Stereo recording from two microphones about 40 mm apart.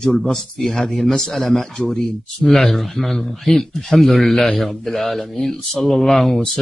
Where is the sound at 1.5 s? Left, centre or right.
Centre.